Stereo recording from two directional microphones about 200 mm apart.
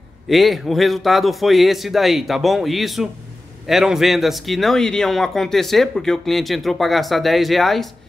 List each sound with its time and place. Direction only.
0.3 s a man's voice: centre (ahead or behind)